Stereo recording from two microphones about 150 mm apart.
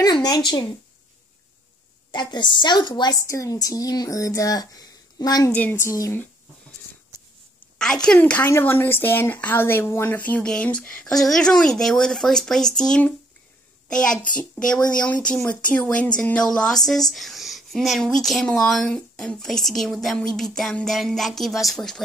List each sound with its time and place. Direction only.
0.0 s a woman's voice: 25° left (ahead or behind)
2.0 s a woman's voice: 30° left (ahead or behind)
5.5 s a woman's voice: 15° left (ahead or behind)
7.8 s a woman's voice: 5° left (ahead or behind)